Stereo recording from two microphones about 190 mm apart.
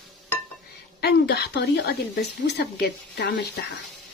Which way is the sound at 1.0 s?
60° left (ahead or behind).